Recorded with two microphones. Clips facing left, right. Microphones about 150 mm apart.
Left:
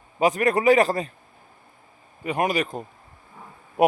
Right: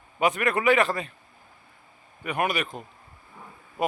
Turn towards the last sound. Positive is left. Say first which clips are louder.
# left 8 dB
turn(degrees=65)  # may be behind; listen again after turning